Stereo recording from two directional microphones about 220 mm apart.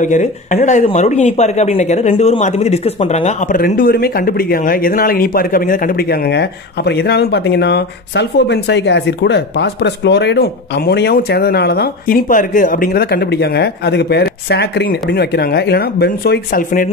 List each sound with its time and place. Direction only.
0.0 s speech: 35° left (ahead or behind)